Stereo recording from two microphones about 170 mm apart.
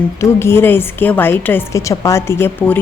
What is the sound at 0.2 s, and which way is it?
Speech, 15° left (ahead or behind).